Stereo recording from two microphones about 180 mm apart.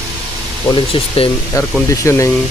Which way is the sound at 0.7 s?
30° left (ahead or behind).